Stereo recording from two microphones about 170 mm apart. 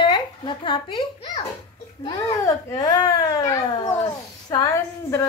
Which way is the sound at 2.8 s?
20° left (ahead or behind).